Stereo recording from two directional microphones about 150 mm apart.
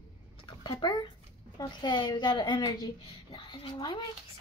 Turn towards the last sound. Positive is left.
turn(degrees=30)  # may be behind; listen again after turning